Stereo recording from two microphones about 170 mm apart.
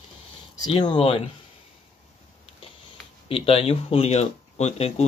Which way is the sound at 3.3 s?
35° left (ahead or behind).